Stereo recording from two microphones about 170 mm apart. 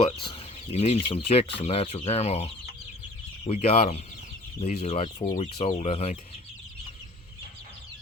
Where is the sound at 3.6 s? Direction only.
40° left (ahead or behind).